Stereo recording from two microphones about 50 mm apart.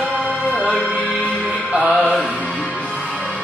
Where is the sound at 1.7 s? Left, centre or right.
Centre.